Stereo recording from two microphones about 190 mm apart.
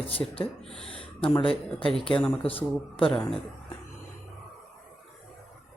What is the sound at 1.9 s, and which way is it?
Speech, 5° left (ahead or behind).